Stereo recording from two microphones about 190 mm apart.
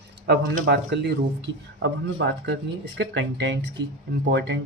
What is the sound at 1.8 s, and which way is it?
Speech, 65° right (ahead or behind).